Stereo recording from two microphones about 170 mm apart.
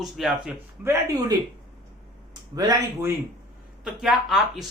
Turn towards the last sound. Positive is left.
turn(degrees=0)  # may be behind; listen again after turning